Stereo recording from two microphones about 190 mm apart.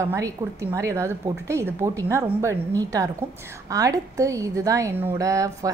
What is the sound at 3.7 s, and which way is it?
A woman's voice, 20° right (ahead or behind).